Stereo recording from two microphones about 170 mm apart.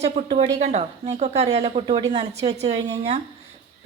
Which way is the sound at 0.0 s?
40° right (ahead or behind).